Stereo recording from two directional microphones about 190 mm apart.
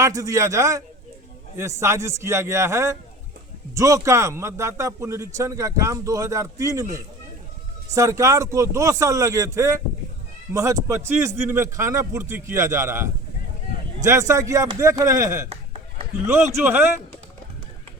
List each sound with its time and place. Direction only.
0.0 s speech: 15° right (ahead or behind)